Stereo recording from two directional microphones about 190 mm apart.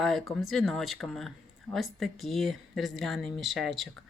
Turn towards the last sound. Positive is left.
turn(degrees=0)  # may be behind; listen again after turning